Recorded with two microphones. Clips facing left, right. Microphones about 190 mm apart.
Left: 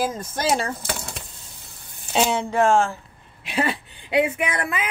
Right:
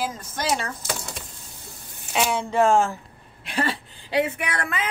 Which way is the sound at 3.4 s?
5° left (ahead or behind).